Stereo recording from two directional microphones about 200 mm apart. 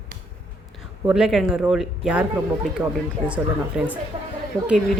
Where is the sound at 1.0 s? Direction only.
5° right (ahead or behind).